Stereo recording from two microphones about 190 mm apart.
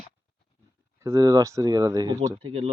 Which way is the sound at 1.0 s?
15° right (ahead or behind).